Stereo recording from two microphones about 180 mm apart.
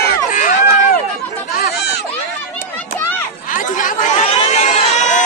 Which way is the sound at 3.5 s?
45° left (ahead or behind).